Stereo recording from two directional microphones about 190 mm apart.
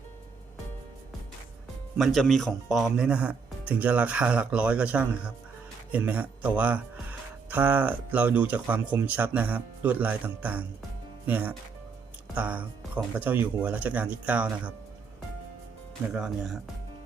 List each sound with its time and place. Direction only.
2.0 s speech: centre (ahead or behind)
16.1 s speech: 5° right (ahead or behind)